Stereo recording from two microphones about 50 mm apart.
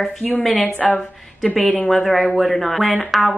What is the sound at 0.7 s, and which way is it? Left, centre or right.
Speech, left.